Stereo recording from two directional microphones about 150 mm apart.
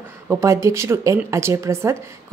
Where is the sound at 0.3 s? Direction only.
20° right (ahead or behind).